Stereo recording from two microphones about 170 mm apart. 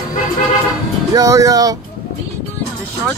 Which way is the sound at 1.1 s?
20° right (ahead or behind).